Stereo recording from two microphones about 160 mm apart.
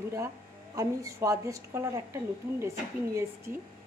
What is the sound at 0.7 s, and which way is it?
A woman's voice, 20° right (ahead or behind).